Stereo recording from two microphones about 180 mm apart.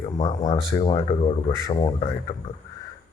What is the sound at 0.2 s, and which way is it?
Speech, 40° left (ahead or behind).